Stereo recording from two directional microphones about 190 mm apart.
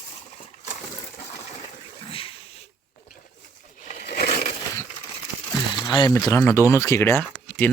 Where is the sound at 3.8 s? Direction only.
50° left (ahead or behind).